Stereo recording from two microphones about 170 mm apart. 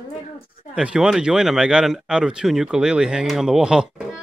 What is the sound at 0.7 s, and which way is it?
Speech, 5° right (ahead or behind).